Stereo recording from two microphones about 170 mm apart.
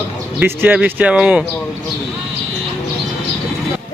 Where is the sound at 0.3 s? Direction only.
10° right (ahead or behind).